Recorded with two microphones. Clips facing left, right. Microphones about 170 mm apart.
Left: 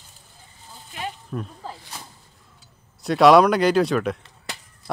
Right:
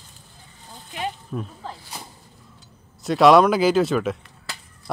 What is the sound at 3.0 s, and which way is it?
Speech, centre (ahead or behind).